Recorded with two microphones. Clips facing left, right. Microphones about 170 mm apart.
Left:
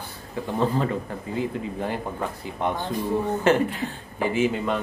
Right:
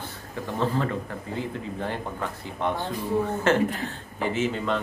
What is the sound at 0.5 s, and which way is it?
Speech, 15° left (ahead or behind).